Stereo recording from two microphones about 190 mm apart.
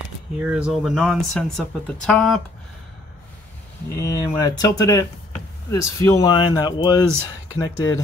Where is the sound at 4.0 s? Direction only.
20° left (ahead or behind).